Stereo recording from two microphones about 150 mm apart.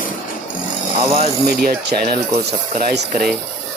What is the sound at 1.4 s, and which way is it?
Speech, 90° right.